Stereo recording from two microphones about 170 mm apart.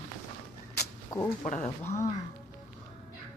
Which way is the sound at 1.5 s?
45° left (ahead or behind).